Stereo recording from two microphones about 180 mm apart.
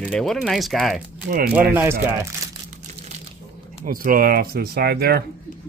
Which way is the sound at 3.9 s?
50° right (ahead or behind).